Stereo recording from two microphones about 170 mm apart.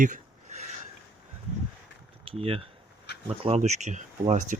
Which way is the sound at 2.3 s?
35° right (ahead or behind).